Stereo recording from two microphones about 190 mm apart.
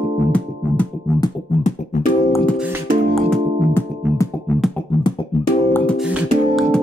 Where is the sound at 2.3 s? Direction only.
15° left (ahead or behind).